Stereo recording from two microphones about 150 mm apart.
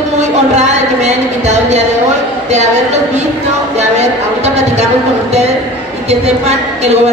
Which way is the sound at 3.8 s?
50° right (ahead or behind).